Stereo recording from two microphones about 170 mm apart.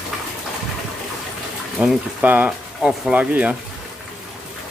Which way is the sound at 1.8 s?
5° right (ahead or behind).